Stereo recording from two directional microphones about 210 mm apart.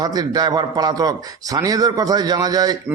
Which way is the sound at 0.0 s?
20° right (ahead or behind).